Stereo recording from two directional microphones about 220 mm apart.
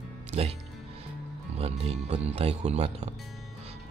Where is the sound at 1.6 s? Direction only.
25° right (ahead or behind).